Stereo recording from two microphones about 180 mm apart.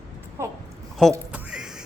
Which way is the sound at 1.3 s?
5° right (ahead or behind).